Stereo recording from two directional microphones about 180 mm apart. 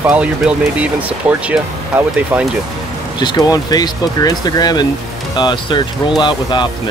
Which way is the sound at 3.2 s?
20° left (ahead or behind).